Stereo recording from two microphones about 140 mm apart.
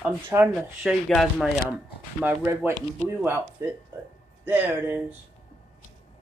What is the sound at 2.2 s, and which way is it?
Speech, 15° right (ahead or behind).